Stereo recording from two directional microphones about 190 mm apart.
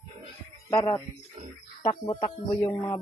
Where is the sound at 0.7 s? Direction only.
15° left (ahead or behind).